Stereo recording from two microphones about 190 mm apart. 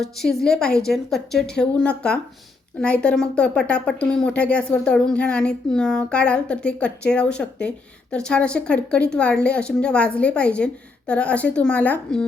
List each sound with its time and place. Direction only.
0.0 s speech: centre (ahead or behind)